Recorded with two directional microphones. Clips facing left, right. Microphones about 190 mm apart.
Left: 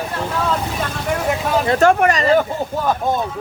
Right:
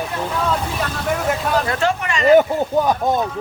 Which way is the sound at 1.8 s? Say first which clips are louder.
Left 7 dB; 50° left (ahead or behind).